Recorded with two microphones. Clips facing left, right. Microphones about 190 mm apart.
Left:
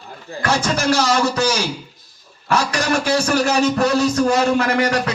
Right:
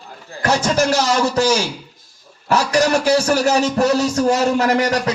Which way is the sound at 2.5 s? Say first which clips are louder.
Right 3 dB; 40° right (ahead or behind).